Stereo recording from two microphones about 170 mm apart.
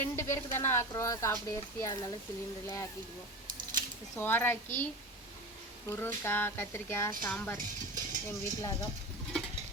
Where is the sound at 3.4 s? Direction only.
55° right (ahead or behind).